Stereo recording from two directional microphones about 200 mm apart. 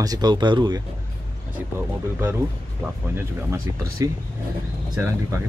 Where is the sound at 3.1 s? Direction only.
15° right (ahead or behind).